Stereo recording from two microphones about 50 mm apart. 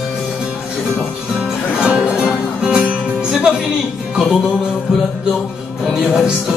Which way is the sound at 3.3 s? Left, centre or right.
Centre.